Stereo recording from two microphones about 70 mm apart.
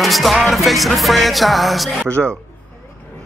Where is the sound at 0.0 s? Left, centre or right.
Centre.